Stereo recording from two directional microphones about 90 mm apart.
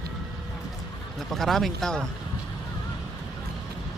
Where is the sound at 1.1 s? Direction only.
Centre (ahead or behind).